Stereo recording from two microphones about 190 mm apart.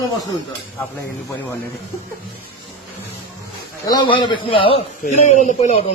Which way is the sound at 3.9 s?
25° left (ahead or behind).